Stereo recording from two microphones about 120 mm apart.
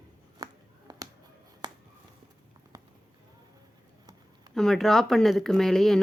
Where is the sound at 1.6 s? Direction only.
35° right (ahead or behind).